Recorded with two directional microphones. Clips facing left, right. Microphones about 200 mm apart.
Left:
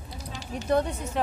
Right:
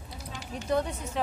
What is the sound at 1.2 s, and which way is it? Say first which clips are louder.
Speech: left 3 dB; 60° left (ahead or behind).